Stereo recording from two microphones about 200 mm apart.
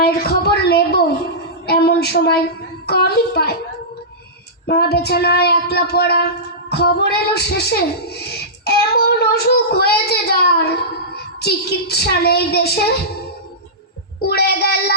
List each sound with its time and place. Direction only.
0.0 s a sound: 50° left (ahead or behind)
2.8 s child singing: 50° left (ahead or behind)
4.6 s child singing: 55° left (ahead or behind)
14.3 s child singing: 50° left (ahead or behind)